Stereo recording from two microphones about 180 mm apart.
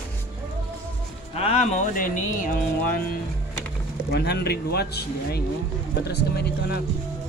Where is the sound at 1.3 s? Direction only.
35° left (ahead or behind); by 3.2 s 55° left (ahead or behind).